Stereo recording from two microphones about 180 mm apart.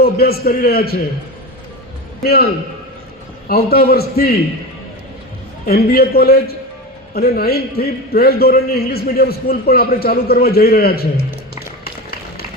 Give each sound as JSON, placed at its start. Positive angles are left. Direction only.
{"t": 0.0, "sound": "a man's voice", "side_deg": 60}
{"t": 2.2, "sound": "a man's voice", "side_deg": 60}
{"t": 3.5, "sound": "a man's voice", "side_deg": 60}
{"t": 5.6, "sound": "a man's voice", "side_deg": 55}